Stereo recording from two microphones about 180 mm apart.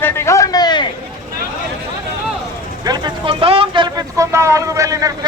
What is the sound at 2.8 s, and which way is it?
Speech, 25° right (ahead or behind).